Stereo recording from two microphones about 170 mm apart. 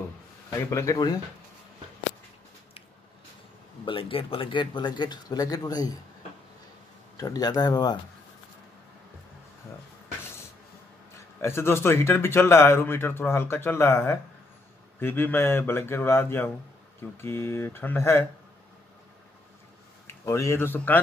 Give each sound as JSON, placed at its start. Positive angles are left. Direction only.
{"t": 0.7, "sound": "speech", "side_deg": 20}
{"t": 3.8, "sound": "speech", "side_deg": 30}
{"t": 7.2, "sound": "speech", "side_deg": 20}
{"t": 11.4, "sound": "speech", "side_deg": 15}
{"t": 20.1, "sound": "a man's voice", "side_deg": 15}